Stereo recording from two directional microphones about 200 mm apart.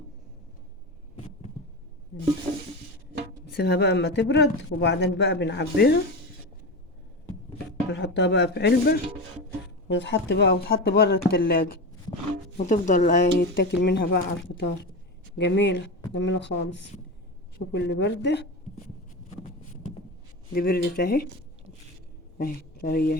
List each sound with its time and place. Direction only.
2.5 s a sound: 25° right (ahead or behind)
3.5 s speech: 55° left (ahead or behind)
7.9 s speech: 60° left (ahead or behind)
12.5 s speech: 35° left (ahead or behind)
13.7 s speech: 55° left (ahead or behind)
20.5 s speech: 50° left (ahead or behind)
22.4 s speech: 45° left (ahead or behind)